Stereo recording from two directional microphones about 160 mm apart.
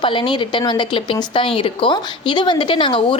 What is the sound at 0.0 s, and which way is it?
Speech, 30° left (ahead or behind).